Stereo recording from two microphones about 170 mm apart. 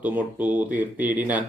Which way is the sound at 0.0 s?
10° right (ahead or behind).